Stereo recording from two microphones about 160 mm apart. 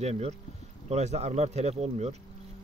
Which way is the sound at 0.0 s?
45° right (ahead or behind).